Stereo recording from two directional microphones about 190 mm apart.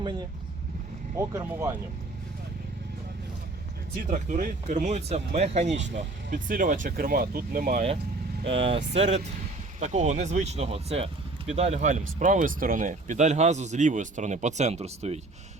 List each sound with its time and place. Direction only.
0.0 s speech: 25° right (ahead or behind)
1.3 s speech: 15° right (ahead or behind)
4.1 s speech: 45° right (ahead or behind)
8.4 s speech: 30° right (ahead or behind)